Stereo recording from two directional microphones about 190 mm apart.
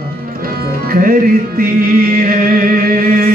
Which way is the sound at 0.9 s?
50° right (ahead or behind).